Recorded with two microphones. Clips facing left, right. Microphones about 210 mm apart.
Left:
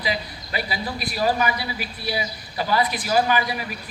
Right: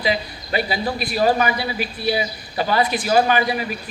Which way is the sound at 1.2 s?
70° right (ahead or behind).